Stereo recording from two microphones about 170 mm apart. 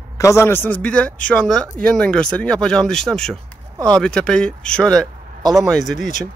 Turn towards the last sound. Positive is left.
turn(degrees=0)  # may be behind; listen again after turning